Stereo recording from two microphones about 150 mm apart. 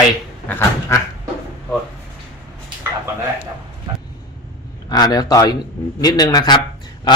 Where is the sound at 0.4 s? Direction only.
20° left (ahead or behind).